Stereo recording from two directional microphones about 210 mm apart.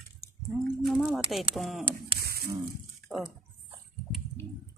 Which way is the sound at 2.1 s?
50° right (ahead or behind).